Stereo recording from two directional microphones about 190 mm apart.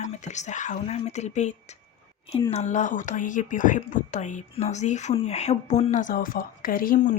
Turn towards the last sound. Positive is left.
turn(degrees=45)  # may be behind; listen again after turning